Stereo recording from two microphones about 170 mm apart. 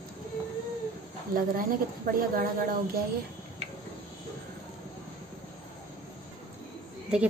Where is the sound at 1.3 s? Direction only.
60° right (ahead or behind).